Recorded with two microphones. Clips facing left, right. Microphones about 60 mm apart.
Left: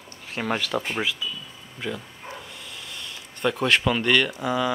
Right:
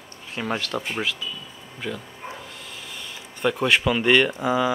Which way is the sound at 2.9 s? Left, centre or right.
Centre.